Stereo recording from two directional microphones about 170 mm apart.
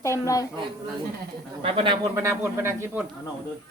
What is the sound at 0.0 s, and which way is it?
Speech, 20° left (ahead or behind).